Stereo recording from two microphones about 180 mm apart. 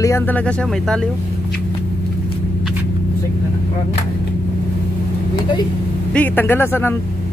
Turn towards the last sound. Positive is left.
turn(degrees=10)  # may be behind; listen again after turning